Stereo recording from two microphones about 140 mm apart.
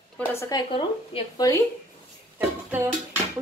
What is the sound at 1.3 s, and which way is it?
Speech, 25° left (ahead or behind).